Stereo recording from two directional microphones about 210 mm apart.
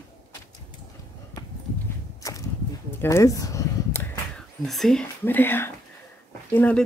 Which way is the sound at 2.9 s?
10° left (ahead or behind).